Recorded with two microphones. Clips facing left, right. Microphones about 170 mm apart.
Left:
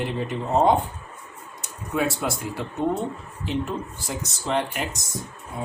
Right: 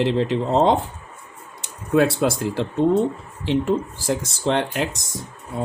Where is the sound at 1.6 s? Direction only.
85° right.